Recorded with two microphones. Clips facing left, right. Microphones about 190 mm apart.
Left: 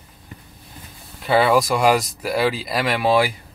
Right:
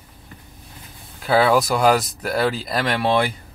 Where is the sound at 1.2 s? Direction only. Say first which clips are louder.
Even; centre (ahead or behind).